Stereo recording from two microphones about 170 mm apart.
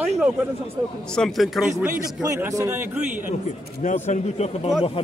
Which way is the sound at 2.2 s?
20° right (ahead or behind).